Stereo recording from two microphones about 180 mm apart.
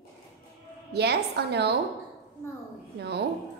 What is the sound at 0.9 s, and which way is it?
Speech, 65° right (ahead or behind).